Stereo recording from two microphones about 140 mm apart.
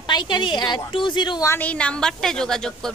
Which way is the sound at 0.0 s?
30° left (ahead or behind).